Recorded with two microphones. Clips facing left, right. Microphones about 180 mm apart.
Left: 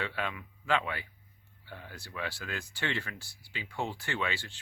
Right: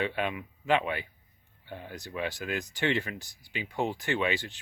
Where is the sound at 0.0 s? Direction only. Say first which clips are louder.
Right 5 dB; 20° right (ahead or behind).